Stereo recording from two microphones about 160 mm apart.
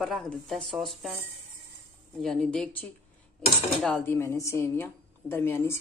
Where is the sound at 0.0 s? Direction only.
Centre (ahead or behind).